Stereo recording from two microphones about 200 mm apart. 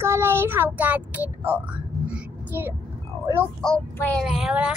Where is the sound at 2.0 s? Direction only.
10° right (ahead or behind).